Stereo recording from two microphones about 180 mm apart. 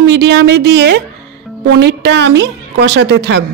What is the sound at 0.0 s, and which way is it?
A woman's voice, 70° right (ahead or behind).